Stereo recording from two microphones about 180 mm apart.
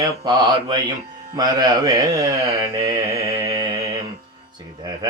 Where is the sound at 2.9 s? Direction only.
20° right (ahead or behind).